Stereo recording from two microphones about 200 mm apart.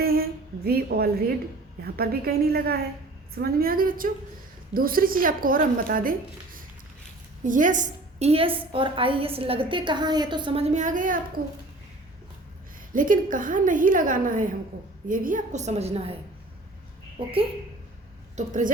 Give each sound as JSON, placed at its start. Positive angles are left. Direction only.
{"t": 0.0, "sound": "a sound", "side_deg": -50}
{"t": 1.8, "sound": "a woman's voice", "side_deg": -50}
{"t": 12.9, "sound": "a woman's voice", "side_deg": -40}
{"t": 17.2, "sound": "a woman's voice", "side_deg": -25}
{"t": 18.3, "sound": "a woman's voice", "side_deg": -40}